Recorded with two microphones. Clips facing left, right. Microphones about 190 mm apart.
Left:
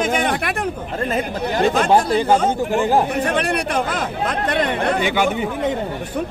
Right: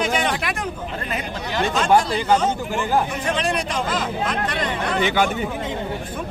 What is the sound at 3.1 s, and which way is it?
Speech, 60° left (ahead or behind).